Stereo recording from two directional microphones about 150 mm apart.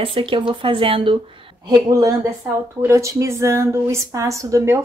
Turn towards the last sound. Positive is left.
turn(degrees=-20)  # may be behind; listen again after turning